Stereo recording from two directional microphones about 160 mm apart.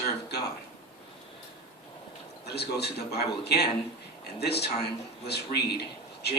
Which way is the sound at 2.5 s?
90° left.